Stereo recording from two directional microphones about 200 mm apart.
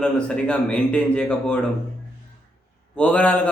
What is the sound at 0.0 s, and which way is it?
A man's voice, 5° left (ahead or behind).